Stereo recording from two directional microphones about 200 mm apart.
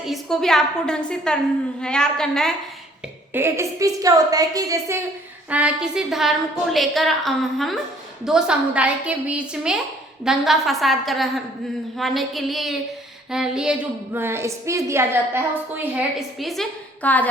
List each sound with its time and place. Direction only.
0.0 s a woman's voice: centre (ahead or behind)
3.3 s a woman's voice: 15° right (ahead or behind)
5.5 s a woman's voice: 5° right (ahead or behind)